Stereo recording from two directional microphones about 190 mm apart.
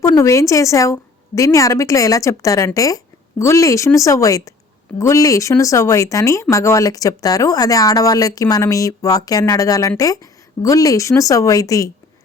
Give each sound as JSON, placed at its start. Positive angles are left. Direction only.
{"t": 0.0, "sound": "speech", "side_deg": 15}